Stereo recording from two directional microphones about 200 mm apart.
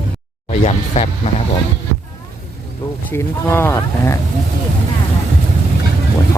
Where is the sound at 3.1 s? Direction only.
10° left (ahead or behind).